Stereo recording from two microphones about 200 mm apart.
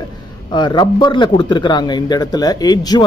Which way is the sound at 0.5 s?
20° left (ahead or behind).